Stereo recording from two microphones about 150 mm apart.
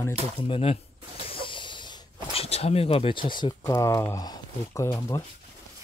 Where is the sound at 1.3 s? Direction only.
35° left (ahead or behind).